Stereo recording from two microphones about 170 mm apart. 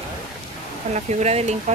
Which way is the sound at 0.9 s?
40° right (ahead or behind).